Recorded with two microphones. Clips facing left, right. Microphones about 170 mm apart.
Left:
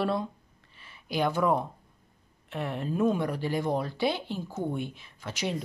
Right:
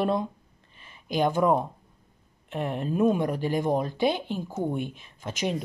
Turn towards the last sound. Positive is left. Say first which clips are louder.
# right 3 dB
turn(degrees=-15)  # may be behind; listen again after turning